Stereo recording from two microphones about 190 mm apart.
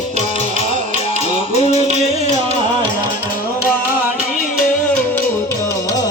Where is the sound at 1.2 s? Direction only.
35° left (ahead or behind).